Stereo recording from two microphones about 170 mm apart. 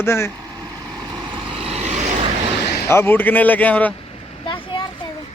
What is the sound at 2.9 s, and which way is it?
A man's voice, 10° left (ahead or behind).